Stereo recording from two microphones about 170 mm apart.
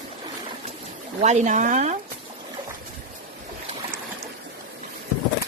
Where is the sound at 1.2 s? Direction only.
45° right (ahead or behind).